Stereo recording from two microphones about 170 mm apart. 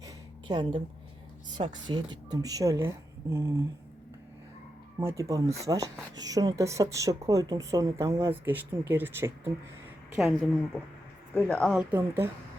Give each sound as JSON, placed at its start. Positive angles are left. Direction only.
{"t": 0.0, "sound": "a sound", "side_deg": -25}
{"t": 1.5, "sound": "speech", "side_deg": -25}
{"t": 4.9, "sound": "speech", "side_deg": -20}
{"t": 10.2, "sound": "a woman's voice", "side_deg": 0}
{"t": 11.8, "sound": "speech", "side_deg": -10}